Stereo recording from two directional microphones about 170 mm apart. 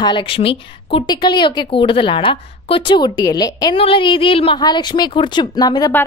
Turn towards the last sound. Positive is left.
turn(degrees=20)  # may be behind; listen again after turning